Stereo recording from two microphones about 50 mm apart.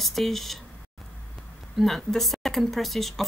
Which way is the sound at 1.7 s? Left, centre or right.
Centre.